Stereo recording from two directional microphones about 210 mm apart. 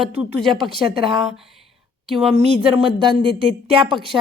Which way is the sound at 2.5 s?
25° right (ahead or behind).